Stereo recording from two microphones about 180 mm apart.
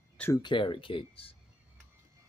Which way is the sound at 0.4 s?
25° left (ahead or behind).